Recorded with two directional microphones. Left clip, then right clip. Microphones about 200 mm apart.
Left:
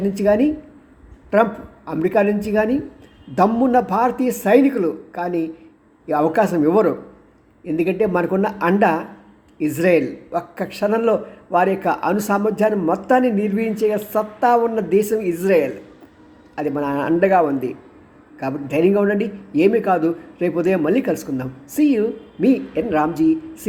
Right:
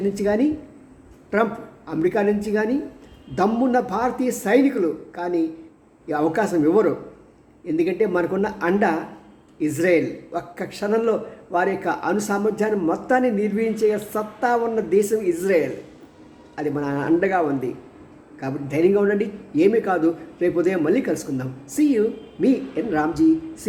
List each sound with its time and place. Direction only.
0.1 s a man's voice: 20° left (ahead or behind)